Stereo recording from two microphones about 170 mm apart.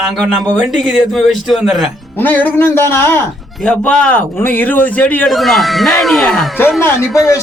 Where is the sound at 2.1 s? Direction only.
10° left (ahead or behind).